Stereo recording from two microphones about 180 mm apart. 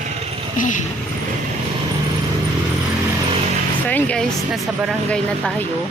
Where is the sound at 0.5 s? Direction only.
45° left (ahead or behind).